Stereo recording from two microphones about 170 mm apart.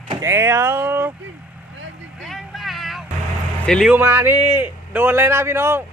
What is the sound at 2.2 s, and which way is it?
Vehicle, centre (ahead or behind).